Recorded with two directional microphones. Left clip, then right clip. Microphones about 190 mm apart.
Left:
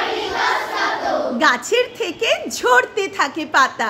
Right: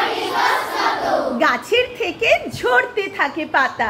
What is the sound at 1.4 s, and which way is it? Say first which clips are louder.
A woman's voice: left 2 dB; 30° left (ahead or behind).